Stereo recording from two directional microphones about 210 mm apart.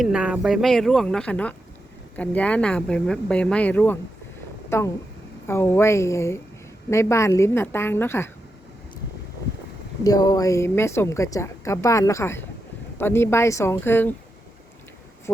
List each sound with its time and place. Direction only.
0.0 s a woman's voice: 5° right (ahead or behind)
10.0 s a woman's voice: 15° left (ahead or behind)